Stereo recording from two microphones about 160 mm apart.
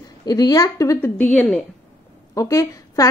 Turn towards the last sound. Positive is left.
turn(degrees=20)  # may be behind; listen again after turning